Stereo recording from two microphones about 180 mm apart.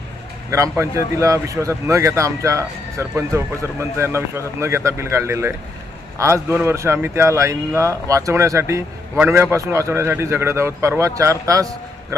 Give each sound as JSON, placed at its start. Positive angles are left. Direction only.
{"t": 0.5, "sound": "speech", "side_deg": -15}